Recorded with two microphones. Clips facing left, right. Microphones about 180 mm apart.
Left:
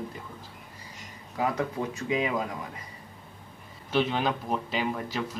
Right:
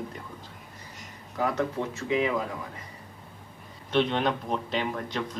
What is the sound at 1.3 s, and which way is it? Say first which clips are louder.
Speech: right 1 dB; 15° left (ahead or behind).